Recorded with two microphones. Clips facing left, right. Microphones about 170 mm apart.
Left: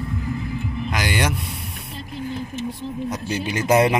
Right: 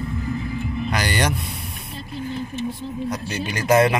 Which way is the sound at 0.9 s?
10° left (ahead or behind).